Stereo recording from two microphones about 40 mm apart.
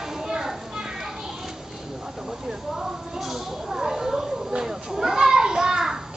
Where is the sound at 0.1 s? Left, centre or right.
Centre.